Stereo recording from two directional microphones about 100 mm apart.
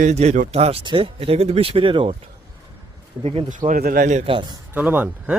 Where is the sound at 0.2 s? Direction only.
90° right.